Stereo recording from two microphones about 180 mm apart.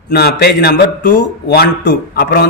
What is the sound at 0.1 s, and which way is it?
Speech, 60° left (ahead or behind).